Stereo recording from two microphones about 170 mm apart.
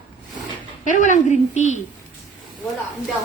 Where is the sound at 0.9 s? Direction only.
45° left (ahead or behind).